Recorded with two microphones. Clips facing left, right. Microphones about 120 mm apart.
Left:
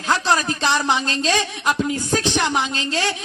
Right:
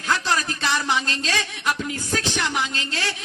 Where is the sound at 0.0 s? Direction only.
25° left (ahead or behind).